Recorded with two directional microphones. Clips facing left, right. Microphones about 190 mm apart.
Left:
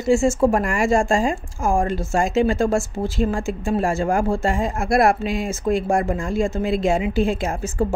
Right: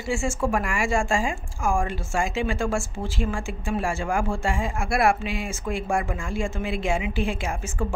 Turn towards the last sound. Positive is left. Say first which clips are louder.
# left 6 dB
turn(degrees=40)  # may be behind; listen again after turning